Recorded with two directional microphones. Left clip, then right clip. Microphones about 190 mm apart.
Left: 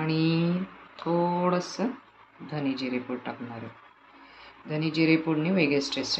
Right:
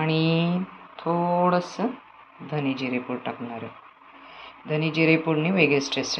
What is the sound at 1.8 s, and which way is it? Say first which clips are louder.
Speech: right 3 dB; 5° right (ahead or behind).